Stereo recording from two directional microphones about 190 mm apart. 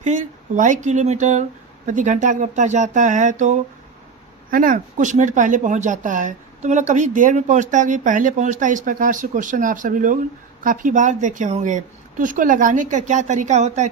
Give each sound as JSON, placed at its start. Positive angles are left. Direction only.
{"t": 0.0, "sound": "speech", "side_deg": -40}